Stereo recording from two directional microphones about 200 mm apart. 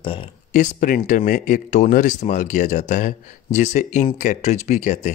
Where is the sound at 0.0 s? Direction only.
25° left (ahead or behind).